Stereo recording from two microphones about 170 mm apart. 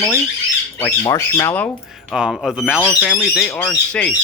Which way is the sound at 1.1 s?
20° left (ahead or behind).